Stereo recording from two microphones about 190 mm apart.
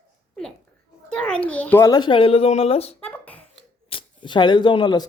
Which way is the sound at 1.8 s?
20° left (ahead or behind).